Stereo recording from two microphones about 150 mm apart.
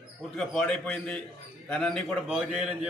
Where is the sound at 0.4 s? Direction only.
5° left (ahead or behind).